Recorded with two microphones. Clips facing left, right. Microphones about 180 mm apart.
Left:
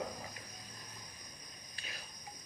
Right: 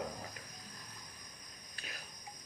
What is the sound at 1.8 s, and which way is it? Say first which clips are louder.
Cricket: right 1 dB; 50° right (ahead or behind).